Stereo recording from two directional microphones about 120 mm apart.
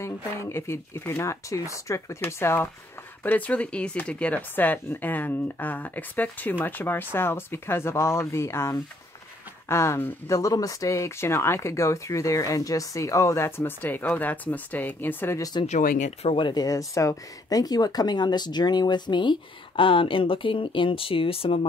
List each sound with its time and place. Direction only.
0.0 s speech: 20° left (ahead or behind)
15.6 s speech: 65° left (ahead or behind)
16.3 s speech: 40° left (ahead or behind)